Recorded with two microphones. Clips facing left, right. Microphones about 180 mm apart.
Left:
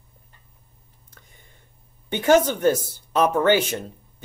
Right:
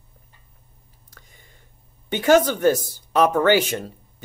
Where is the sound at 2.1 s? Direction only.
10° right (ahead or behind).